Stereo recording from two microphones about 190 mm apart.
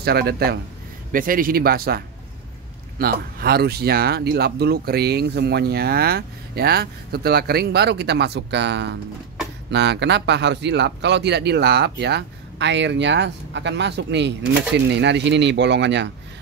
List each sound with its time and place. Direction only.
0.0 s speech: 55° right (ahead or behind)